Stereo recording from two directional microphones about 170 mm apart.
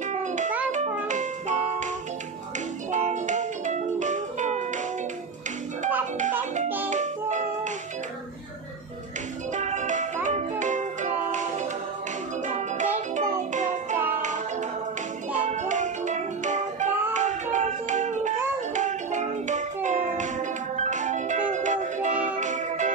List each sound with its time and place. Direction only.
0.7 s music: 45° right (ahead or behind)
2.9 s music: 45° right (ahead or behind)
6.9 s music: 45° right (ahead or behind)
9.6 s music: 45° right (ahead or behind)
12.4 s music: 45° right (ahead or behind)
15.3 s music: 50° right (ahead or behind)